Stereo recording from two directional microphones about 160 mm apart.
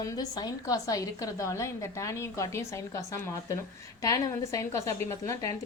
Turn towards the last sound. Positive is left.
turn(degrees=20)  # may be behind; listen again after turning